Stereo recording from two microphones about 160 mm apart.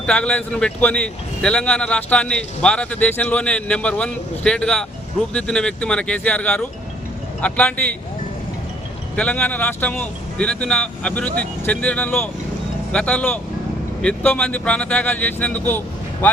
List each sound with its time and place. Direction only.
0.0 s speech: 5° left (ahead or behind)
9.1 s speech: 10° left (ahead or behind)